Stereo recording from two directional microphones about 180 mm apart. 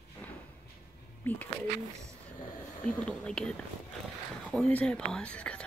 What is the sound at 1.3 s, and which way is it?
Speech, 10° left (ahead or behind).